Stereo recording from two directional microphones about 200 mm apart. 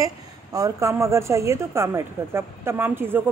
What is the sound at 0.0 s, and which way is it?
Speech, 15° right (ahead or behind).